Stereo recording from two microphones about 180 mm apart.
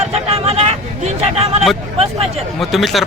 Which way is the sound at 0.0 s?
35° right (ahead or behind).